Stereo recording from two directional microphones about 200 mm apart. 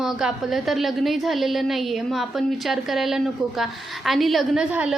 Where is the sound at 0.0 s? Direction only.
Centre (ahead or behind).